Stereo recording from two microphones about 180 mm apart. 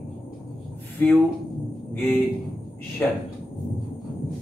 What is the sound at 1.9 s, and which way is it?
Speech, 10° left (ahead or behind).